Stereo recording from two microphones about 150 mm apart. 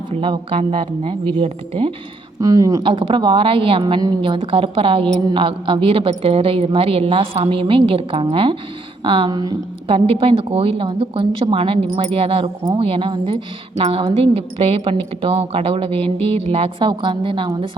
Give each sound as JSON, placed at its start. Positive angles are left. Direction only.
{"t": 0.1, "sound": "a woman's voice", "side_deg": -35}
{"t": 2.4, "sound": "a woman's voice", "side_deg": -20}
{"t": 2.8, "sound": "a woman's voice", "side_deg": -35}
{"t": 9.8, "sound": "a woman's voice", "side_deg": -40}